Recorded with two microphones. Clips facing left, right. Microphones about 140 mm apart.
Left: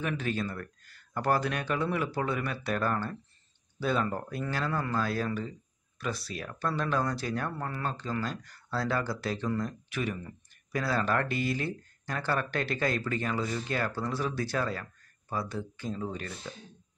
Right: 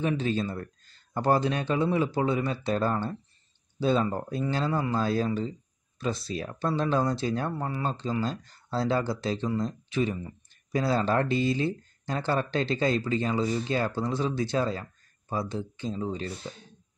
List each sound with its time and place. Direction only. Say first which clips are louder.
0.2 s speech: right 4 dB; 25° right (ahead or behind)